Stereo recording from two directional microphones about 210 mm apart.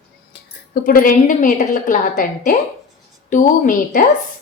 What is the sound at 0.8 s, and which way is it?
A woman's voice, 40° left (ahead or behind).